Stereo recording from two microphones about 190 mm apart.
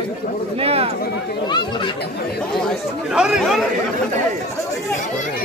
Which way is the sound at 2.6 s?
5° right (ahead or behind).